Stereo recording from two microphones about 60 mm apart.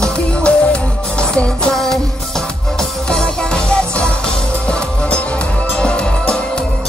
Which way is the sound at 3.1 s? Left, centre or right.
Centre.